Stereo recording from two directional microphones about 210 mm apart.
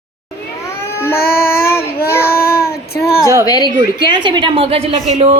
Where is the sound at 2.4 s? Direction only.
45° left (ahead or behind).